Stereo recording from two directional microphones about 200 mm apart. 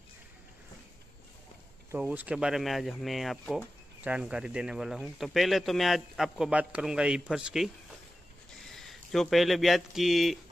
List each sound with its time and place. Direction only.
1.9 s speech: 10° right (ahead or behind)